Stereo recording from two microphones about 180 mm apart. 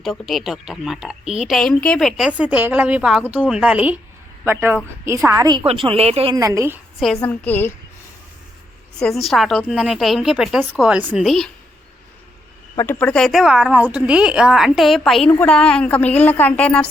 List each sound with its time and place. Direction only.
0.0 s a woman's voice: centre (ahead or behind); by 6.3 s 35° right (ahead or behind)
6.3 s a woman's voice: 20° right (ahead or behind)
7.2 s a woman's voice: 10° left (ahead or behind)
9.0 s speech: centre (ahead or behind)
12.7 s speech: 15° left (ahead or behind)